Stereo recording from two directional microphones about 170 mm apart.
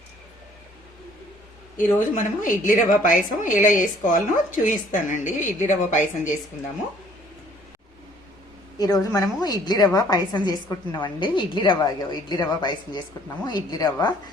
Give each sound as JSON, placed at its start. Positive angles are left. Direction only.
{"t": 1.7, "sound": "a woman's voice", "side_deg": 50}
{"t": 8.8, "sound": "a woman's voice", "side_deg": 20}